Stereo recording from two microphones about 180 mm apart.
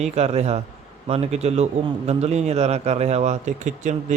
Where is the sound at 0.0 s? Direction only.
35° right (ahead or behind).